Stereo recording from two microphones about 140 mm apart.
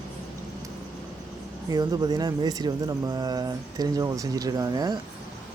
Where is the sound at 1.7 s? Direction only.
30° right (ahead or behind).